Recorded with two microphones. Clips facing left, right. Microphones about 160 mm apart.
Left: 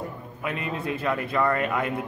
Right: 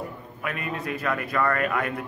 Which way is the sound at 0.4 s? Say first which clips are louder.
Left 1 dB; 25° left (ahead or behind).